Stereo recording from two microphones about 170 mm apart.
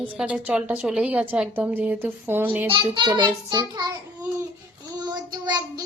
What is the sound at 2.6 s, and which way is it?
A child's voice, 30° right (ahead or behind).